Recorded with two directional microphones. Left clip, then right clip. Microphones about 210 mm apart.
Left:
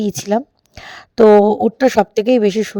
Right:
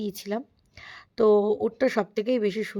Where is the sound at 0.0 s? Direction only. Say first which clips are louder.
Left 13 dB; 35° left (ahead or behind).